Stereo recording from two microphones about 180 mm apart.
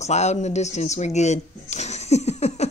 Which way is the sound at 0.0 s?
40° left (ahead or behind).